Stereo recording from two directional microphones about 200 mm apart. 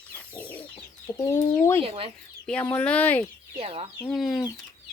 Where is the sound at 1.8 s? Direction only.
30° right (ahead or behind).